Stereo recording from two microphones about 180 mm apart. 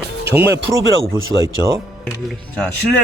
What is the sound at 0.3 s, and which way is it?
Speech, 15° right (ahead or behind).